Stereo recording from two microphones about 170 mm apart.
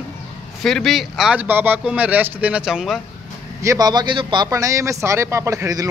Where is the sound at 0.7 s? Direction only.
Centre (ahead or behind).